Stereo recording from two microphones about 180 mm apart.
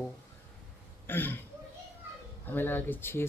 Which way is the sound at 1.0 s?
10° left (ahead or behind).